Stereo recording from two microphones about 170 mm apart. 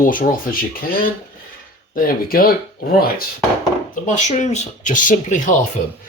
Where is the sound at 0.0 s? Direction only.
55° left (ahead or behind).